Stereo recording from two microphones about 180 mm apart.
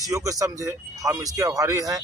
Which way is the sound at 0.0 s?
20° right (ahead or behind).